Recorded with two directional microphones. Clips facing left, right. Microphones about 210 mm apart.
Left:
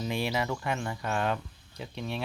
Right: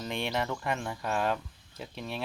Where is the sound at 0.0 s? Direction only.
Centre (ahead or behind).